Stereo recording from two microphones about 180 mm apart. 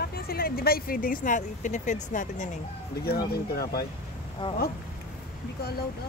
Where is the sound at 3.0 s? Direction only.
60° left (ahead or behind).